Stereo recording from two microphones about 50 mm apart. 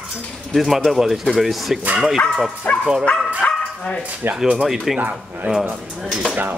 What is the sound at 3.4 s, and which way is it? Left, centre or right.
Dog, left.